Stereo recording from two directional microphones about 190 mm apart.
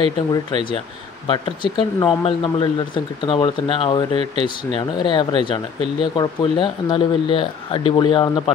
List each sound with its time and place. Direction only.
1.2 s speech: 25° left (ahead or behind)